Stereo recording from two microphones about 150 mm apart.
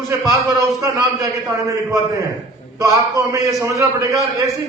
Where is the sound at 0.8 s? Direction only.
20° right (ahead or behind).